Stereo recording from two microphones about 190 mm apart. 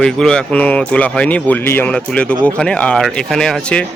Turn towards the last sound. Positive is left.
turn(degrees=5)  # may be behind; listen again after turning